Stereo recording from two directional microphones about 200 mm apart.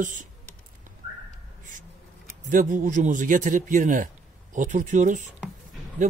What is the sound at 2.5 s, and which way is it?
A man's voice, 40° right (ahead or behind).